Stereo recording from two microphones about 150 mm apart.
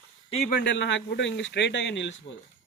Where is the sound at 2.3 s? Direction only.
55° left (ahead or behind).